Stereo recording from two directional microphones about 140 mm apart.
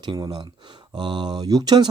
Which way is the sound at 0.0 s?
30° right (ahead or behind).